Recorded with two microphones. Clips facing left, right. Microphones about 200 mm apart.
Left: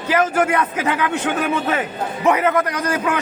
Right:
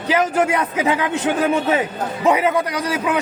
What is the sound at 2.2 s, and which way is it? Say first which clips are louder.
Speech: even; 15° right (ahead or behind).